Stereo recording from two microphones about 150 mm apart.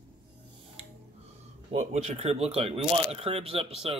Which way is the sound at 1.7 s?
50° right (ahead or behind).